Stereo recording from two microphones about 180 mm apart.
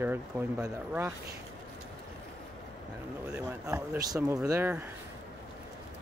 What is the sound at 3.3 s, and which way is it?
Speech, 10° right (ahead or behind).